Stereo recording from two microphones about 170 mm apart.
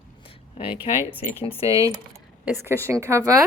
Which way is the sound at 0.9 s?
35° left (ahead or behind).